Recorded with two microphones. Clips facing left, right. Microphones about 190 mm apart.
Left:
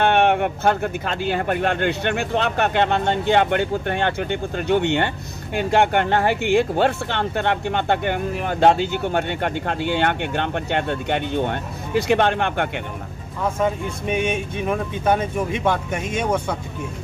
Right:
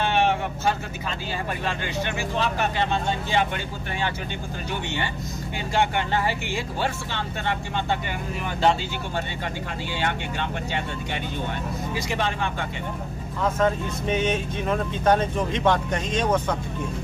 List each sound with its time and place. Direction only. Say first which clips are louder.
0.0 s speech: left 6 dB; 60° left (ahead or behind)
13.4 s speech: left 1 dB; 10° left (ahead or behind)